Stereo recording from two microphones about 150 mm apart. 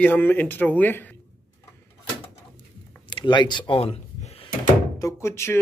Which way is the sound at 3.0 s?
30° left (ahead or behind).